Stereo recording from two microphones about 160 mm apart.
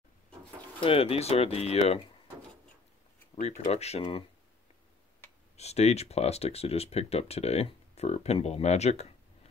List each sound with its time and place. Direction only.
0.7 s speech: 35° left (ahead or behind)
3.3 s speech: 45° left (ahead or behind)
5.6 s speech: 40° left (ahead or behind)